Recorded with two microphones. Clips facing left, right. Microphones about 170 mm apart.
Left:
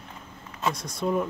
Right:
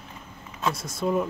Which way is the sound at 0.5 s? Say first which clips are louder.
Right 1 dB; centre (ahead or behind).